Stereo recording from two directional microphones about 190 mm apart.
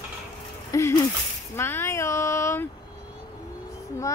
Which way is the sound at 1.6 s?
15° left (ahead or behind).